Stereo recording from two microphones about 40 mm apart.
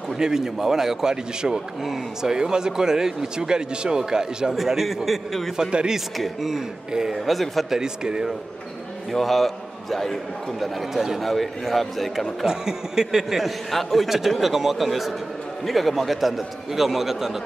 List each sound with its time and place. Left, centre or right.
0.2 s a man's voice: centre
1.8 s a man's voice: centre
2.3 s a man's voice: centre
4.6 s a man's voice: centre
5.6 s speech: centre
5.9 s a man's voice: centre
6.9 s a man's voice: centre
7.2 s a man's voice: centre
7.7 s speech: centre
9.1 s a man's voice: centre
10.8 s a man's voice: centre
12.4 s a man's voice: centre
13.7 s a man's voice: centre